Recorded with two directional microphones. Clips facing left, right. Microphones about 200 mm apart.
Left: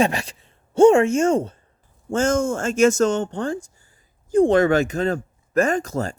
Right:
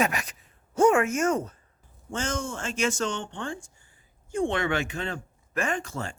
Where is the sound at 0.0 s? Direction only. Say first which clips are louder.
Left 6 dB; 30° left (ahead or behind).